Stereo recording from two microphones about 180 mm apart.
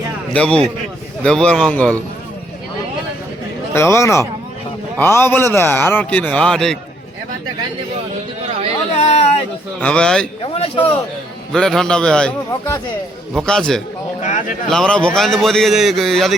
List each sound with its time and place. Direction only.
0.3 s a man's voice: 5° left (ahead or behind)
3.8 s a man's voice: 15° left (ahead or behind)
9.0 s a sound: 35° left (ahead or behind)
9.8 s a man's voice: 5° left (ahead or behind)
10.4 s a man's voice: 30° left (ahead or behind)
11.5 s a man's voice: 5° left (ahead or behind)
14.2 s speech: 45° left (ahead or behind)
14.7 s a man's voice: 5° left (ahead or behind)